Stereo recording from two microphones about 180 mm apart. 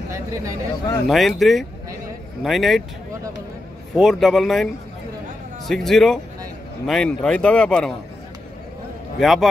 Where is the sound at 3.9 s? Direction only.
Centre (ahead or behind).